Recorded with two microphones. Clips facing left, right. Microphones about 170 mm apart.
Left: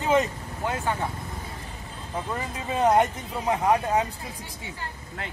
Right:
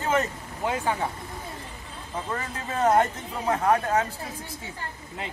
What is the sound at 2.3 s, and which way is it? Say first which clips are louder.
Speech: left 1 dB; 15° left (ahead or behind).